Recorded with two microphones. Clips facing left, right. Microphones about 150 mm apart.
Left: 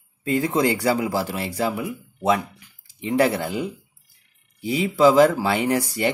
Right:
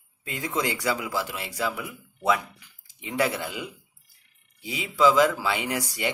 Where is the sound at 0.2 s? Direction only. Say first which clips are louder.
Left 9 dB; 35° left (ahead or behind).